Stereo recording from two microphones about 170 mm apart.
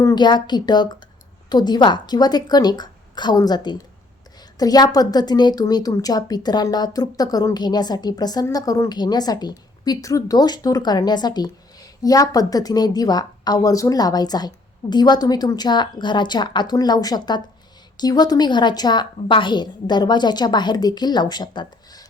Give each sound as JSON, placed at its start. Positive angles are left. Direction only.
{"t": 0.0, "sound": "a woman's voice", "side_deg": 25}